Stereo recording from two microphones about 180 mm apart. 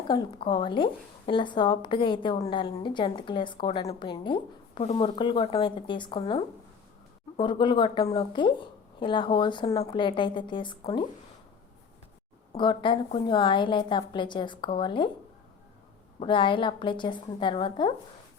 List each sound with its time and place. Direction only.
0.1 s a woman's voice: 25° left (ahead or behind)
12.5 s a woman's voice: 25° left (ahead or behind)
16.2 s a woman's voice: 25° left (ahead or behind)